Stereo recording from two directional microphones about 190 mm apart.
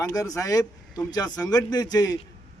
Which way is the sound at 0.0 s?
20° left (ahead or behind).